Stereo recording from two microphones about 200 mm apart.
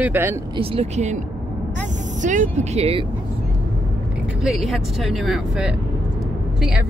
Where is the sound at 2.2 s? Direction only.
35° right (ahead or behind).